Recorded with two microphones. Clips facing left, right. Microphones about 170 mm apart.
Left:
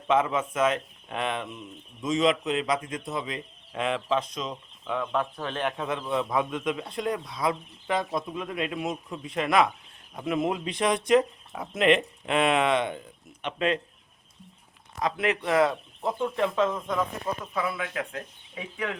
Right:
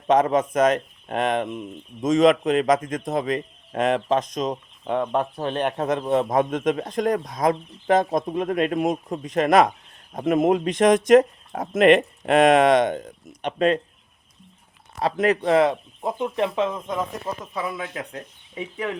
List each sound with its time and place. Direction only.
0.1 s speech: 40° right (ahead or behind)
12.9 s speech: 75° right (ahead or behind)
13.4 s speech: 40° right (ahead or behind)
14.9 s speech: 40° right (ahead or behind)